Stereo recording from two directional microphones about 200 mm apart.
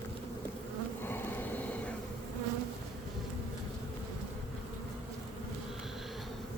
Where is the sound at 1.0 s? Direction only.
10° left (ahead or behind).